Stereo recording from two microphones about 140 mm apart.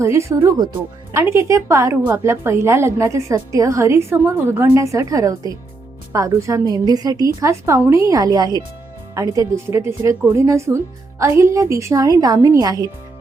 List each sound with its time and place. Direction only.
0.0 s a woman's voice: 20° right (ahead or behind)